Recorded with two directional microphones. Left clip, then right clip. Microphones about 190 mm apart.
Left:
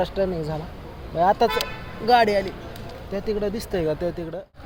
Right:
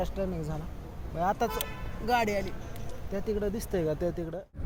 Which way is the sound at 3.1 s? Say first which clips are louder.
Left 6 dB; 10° right (ahead or behind).